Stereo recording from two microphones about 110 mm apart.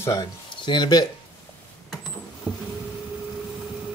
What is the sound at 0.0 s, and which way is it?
Speech, 35° left (ahead or behind).